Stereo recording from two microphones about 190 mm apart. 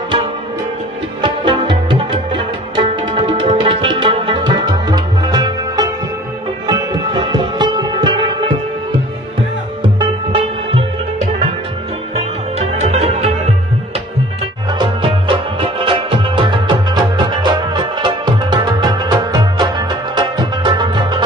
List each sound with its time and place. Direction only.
1.2 s music: 25° right (ahead or behind)
9.9 s music: 25° right (ahead or behind)
12.5 s music: 35° right (ahead or behind)
14.8 s music: 25° right (ahead or behind)